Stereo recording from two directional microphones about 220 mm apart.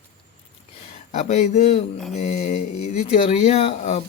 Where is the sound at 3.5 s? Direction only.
25° left (ahead or behind).